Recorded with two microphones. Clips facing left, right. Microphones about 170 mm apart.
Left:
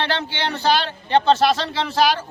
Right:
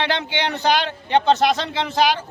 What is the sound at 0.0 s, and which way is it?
A man's voice, 15° right (ahead or behind).